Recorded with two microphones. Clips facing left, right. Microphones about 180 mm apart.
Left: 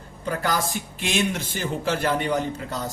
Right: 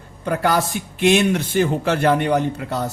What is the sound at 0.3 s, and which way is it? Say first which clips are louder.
Speech: right 6 dB; 65° right (ahead or behind).